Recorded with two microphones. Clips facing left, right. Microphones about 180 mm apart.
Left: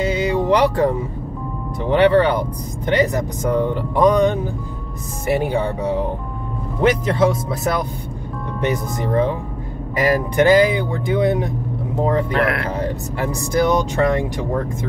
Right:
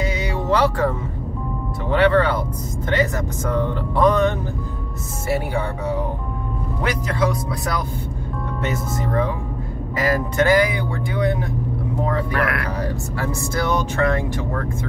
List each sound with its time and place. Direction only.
0.0 s music: 25° left (ahead or behind)
1.9 s speech: 20° left (ahead or behind)